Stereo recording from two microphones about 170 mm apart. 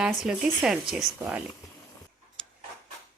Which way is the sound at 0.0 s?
5° right (ahead or behind).